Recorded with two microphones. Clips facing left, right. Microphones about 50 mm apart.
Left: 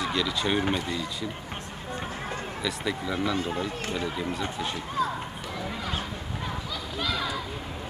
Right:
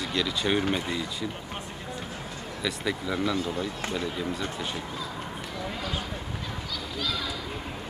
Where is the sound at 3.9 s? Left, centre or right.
Centre.